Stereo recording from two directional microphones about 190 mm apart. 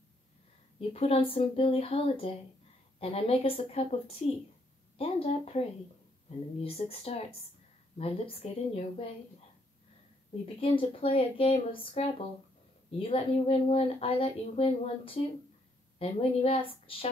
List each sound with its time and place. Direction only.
0.7 s speech: 30° left (ahead or behind)
10.6 s a woman's voice: 30° left (ahead or behind)
13.1 s a woman's voice: 30° left (ahead or behind)